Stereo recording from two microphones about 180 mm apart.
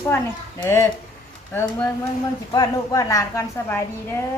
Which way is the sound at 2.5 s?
20° left (ahead or behind).